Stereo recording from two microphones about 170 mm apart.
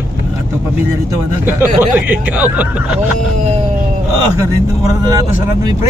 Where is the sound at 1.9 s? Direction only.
10° right (ahead or behind).